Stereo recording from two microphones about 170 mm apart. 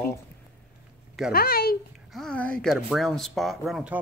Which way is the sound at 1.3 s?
60° left (ahead or behind).